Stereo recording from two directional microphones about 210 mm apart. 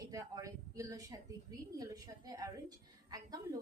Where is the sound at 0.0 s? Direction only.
15° right (ahead or behind).